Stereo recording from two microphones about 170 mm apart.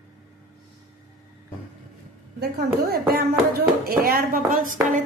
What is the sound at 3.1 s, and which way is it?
A woman's voice, 65° right (ahead or behind).